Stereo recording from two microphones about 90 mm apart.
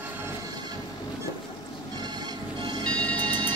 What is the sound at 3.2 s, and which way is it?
Train, 60° right (ahead or behind).